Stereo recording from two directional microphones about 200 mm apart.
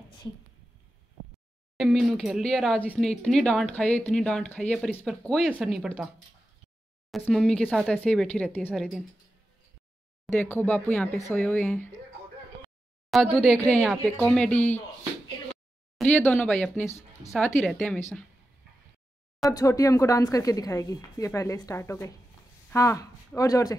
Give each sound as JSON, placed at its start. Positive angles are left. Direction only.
{"t": 1.8, "sound": "speech", "side_deg": 0}
{"t": 7.1, "sound": "speech", "side_deg": 0}
{"t": 10.2, "sound": "a woman's voice", "side_deg": 10}
{"t": 13.1, "sound": "speech", "side_deg": 0}
{"t": 16.0, "sound": "a woman's voice", "side_deg": 5}
{"t": 19.5, "sound": "a woman's voice", "side_deg": 15}